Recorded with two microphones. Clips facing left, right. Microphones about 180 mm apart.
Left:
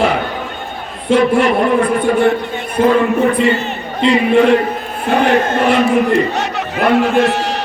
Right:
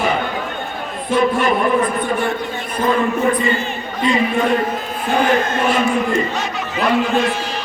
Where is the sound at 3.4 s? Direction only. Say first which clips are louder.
Left 5 dB; 70° left (ahead or behind).